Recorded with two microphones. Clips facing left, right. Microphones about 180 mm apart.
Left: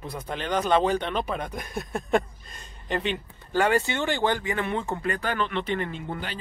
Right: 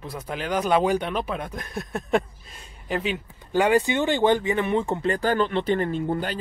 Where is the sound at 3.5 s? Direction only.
15° right (ahead or behind); by 6.4 s 40° right (ahead or behind).